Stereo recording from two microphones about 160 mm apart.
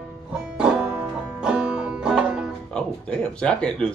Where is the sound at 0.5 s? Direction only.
5° right (ahead or behind).